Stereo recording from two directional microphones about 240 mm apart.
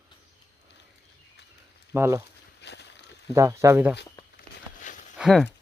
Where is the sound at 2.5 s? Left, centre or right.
Left.